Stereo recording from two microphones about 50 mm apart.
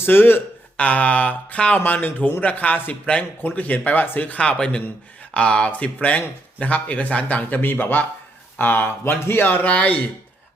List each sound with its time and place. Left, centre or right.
0.0 s speech: left
0.8 s speech: left
4.4 s speech: centre
7.6 s speech: left